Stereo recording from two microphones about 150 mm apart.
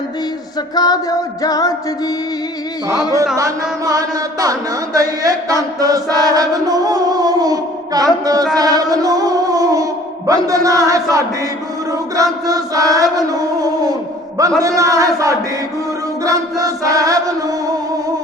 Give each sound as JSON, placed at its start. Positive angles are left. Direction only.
{"t": 0.8, "sound": "music", "side_deg": 25}
{"t": 3.3, "sound": "chant", "side_deg": -20}
{"t": 4.9, "sound": "chant", "side_deg": -25}
{"t": 8.5, "sound": "music", "side_deg": -25}
{"t": 11.9, "sound": "chant", "side_deg": -25}
{"t": 13.1, "sound": "music", "side_deg": -25}
{"t": 14.6, "sound": "chant", "side_deg": -20}